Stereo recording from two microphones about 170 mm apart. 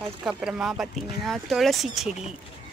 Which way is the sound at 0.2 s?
5° right (ahead or behind).